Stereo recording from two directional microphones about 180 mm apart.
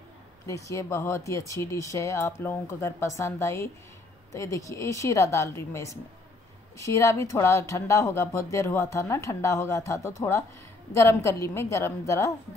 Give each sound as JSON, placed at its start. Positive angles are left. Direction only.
{"t": 0.5, "sound": "speech", "side_deg": 15}